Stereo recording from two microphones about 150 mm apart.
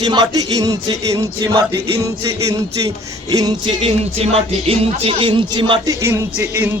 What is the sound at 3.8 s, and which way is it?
Speech, 40° right (ahead or behind).